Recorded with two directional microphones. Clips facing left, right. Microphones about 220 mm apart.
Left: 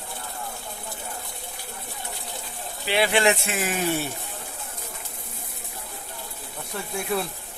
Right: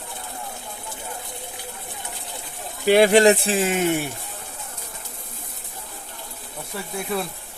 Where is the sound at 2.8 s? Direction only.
45° right (ahead or behind); by 4.0 s 20° right (ahead or behind).